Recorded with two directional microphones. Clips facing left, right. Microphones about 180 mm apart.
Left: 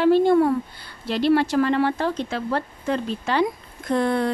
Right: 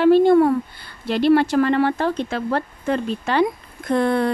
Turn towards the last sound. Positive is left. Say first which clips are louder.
# right 3 dB
turn(degrees=-60)  # may be behind; listen again after turning